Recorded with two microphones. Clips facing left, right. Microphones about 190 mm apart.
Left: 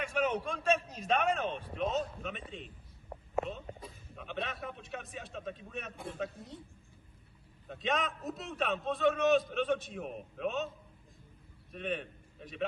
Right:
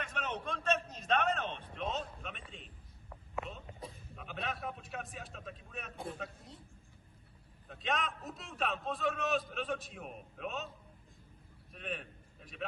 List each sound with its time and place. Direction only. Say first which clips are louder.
0.0 s a man's voice: left 8 dB; 10° left (ahead or behind)
3.1 s a sound: left 7 dB; 30° left (ahead or behind)
4.2 s a man's voice: left 2 dB; centre (ahead or behind)
7.7 s a man's voice: left 3 dB; centre (ahead or behind)
11.7 s a man's voice: left 6 dB; centre (ahead or behind)